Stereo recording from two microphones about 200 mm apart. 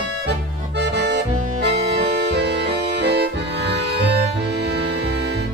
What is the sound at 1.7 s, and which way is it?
Music, 60° right (ahead or behind).